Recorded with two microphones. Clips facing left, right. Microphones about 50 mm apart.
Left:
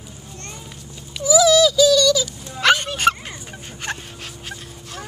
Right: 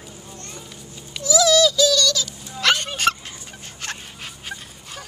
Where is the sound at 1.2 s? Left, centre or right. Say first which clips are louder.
Left 3 dB; centre.